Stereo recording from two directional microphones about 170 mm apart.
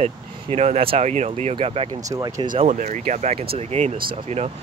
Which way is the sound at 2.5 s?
45° right (ahead or behind).